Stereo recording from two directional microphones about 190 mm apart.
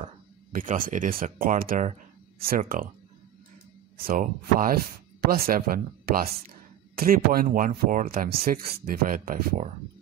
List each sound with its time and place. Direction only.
0.5 s speech: 45° right (ahead or behind)
4.0 s speech: 50° right (ahead or behind)